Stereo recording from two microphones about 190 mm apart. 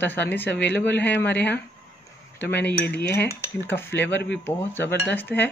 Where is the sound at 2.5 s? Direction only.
60° left (ahead or behind).